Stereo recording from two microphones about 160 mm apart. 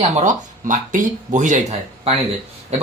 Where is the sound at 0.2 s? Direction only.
50° right (ahead or behind).